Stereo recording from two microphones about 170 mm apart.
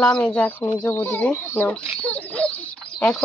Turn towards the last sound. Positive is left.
turn(degrees=5)  # may be behind; listen again after turning